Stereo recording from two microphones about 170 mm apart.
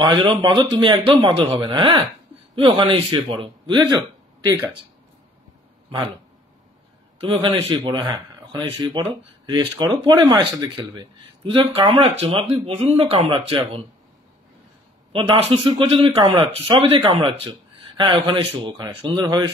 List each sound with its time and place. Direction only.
0.0 s a man's voice: 25° right (ahead or behind)
7.2 s a man's voice: 30° right (ahead or behind)
8.1 s a sound: 25° right (ahead or behind)
10.0 s speech: 30° right (ahead or behind)
15.1 s a man's voice: 30° right (ahead or behind)